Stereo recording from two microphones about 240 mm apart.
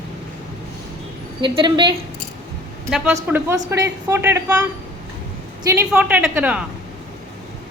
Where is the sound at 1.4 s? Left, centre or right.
Centre.